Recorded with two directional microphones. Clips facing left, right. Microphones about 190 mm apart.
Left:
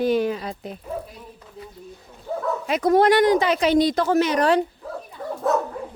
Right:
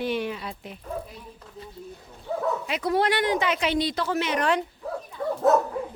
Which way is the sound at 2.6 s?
45° left (ahead or behind).